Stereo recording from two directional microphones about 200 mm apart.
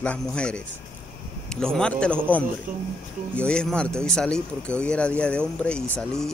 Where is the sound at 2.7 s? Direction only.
40° right (ahead or behind).